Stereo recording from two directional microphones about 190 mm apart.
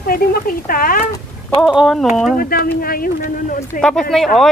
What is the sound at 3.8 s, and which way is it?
Speech, 5° left (ahead or behind).